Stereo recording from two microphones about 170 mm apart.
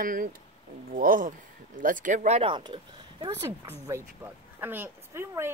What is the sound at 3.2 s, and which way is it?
A woman's voice, 15° right (ahead or behind).